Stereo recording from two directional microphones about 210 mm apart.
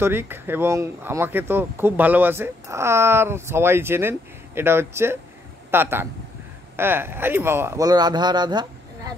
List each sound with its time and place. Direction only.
0.0 s speech: 10° right (ahead or behind)